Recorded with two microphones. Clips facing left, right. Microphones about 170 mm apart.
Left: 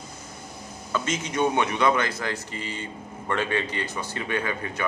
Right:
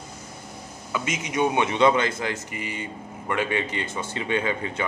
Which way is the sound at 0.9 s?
15° right (ahead or behind).